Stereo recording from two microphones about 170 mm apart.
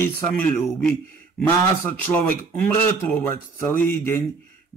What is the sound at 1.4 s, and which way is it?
A man's voice, 10° left (ahead or behind).